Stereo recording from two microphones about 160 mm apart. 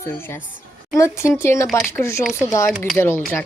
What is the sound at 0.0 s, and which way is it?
Speech, 15° left (ahead or behind).